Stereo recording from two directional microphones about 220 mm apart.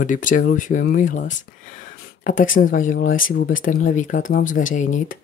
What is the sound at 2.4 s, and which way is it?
Speech, 40° left (ahead or behind).